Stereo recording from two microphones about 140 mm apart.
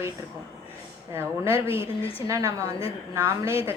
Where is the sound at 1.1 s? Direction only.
15° right (ahead or behind).